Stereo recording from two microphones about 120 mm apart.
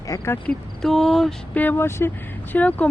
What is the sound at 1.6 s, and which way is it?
Speech, 15° left (ahead or behind).